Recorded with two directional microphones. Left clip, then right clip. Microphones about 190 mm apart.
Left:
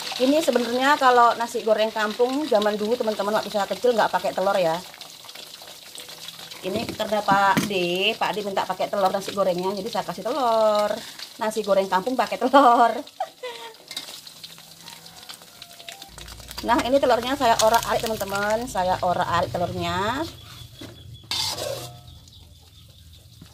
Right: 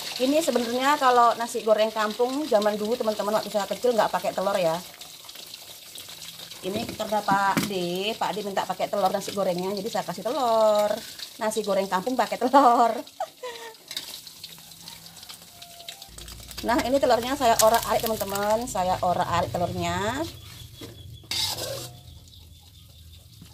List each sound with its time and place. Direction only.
0.2 s speech: centre (ahead or behind)
6.6 s speech: 10° left (ahead or behind)
16.6 s speech: 5° right (ahead or behind)